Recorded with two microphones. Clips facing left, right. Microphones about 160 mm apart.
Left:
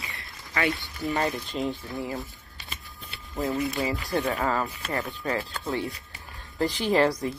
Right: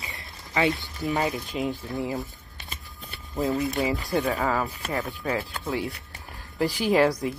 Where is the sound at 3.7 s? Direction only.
20° right (ahead or behind).